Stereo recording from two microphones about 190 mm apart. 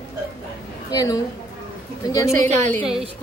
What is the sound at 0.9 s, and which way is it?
Speech, 20° left (ahead or behind).